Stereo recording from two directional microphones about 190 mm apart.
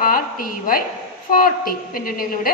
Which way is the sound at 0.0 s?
50° left (ahead or behind).